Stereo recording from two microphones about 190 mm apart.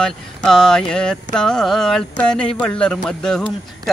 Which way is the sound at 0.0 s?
5° left (ahead or behind).